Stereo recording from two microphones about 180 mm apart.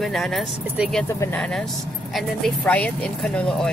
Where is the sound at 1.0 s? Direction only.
15° left (ahead or behind).